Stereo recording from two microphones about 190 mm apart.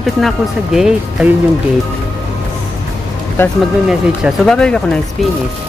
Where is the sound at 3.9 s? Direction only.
Centre (ahead or behind).